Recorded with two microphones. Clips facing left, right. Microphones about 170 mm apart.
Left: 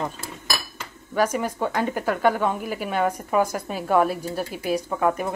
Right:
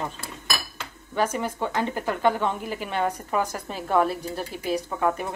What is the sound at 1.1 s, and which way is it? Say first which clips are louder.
A woman's voice: left 3 dB; 10° left (ahead or behind).